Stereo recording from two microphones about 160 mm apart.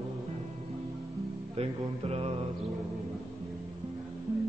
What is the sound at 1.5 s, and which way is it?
Music, 40° right (ahead or behind).